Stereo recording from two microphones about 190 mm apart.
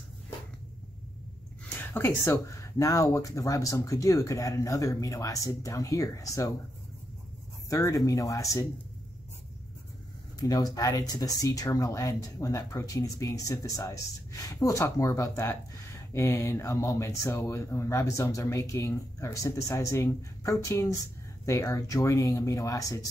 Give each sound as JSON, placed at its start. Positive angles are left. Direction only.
{"t": 1.8, "sound": "speech", "side_deg": 15}
{"t": 7.7, "sound": "speech", "side_deg": 20}
{"t": 10.4, "sound": "speech", "side_deg": 20}